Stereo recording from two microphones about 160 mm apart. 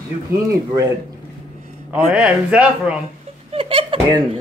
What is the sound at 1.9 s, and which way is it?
Speech, 5° right (ahead or behind).